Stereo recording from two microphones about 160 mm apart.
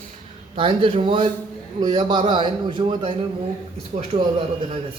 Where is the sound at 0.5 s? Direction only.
35° right (ahead or behind).